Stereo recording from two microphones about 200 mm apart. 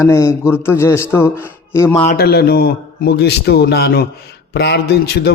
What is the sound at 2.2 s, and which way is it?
A man's voice, 50° left (ahead or behind).